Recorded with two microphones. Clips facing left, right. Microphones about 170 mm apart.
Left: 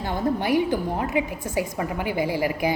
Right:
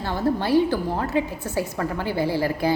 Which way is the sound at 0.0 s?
15° left (ahead or behind).